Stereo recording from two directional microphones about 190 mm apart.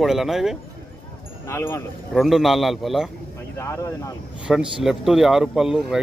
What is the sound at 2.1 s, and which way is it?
Speech, centre (ahead or behind).